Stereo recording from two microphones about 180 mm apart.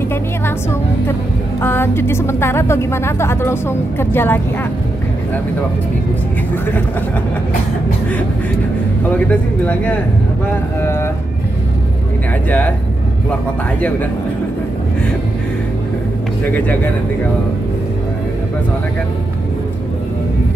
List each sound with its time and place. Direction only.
1.6 s speech: 10° left (ahead or behind)
9.1 s speech: 10° left (ahead or behind)
12.4 s speech: 10° left (ahead or behind)